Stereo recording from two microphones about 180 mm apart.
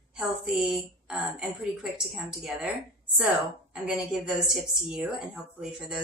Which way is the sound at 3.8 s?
5° right (ahead or behind).